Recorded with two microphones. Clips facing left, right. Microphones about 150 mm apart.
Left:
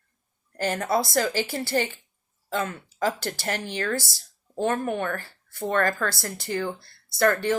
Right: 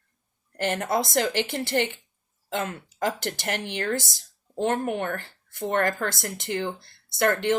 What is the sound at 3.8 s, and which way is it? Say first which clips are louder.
Speech: even; 20° right (ahead or behind).